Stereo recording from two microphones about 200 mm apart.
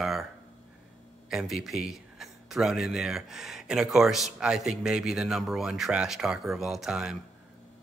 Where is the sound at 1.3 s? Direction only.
Centre (ahead or behind).